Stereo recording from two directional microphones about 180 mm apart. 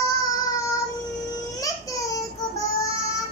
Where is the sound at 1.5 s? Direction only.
20° left (ahead or behind).